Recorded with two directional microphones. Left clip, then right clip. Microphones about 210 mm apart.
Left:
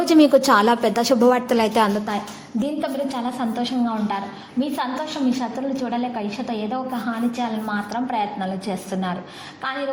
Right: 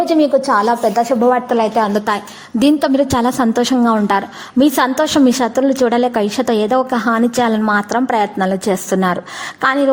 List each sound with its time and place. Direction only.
0.1 s a woman's voice: 5° left (ahead or behind)
2.6 s a woman's voice: 45° right (ahead or behind)